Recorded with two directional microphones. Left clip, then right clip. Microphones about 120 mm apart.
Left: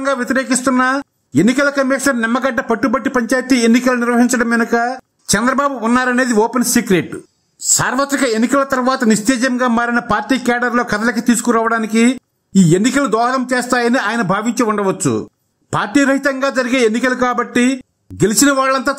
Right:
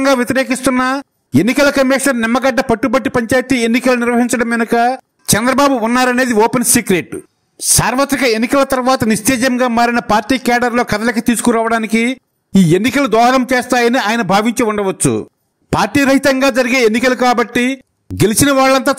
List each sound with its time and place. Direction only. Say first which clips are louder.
0.0 s a man's voice: right 4 dB; 35° right (ahead or behind)
6.3 s a man's voice: right 2 dB; 30° right (ahead or behind)
15.7 s a man's voice: right 2 dB; 40° right (ahead or behind)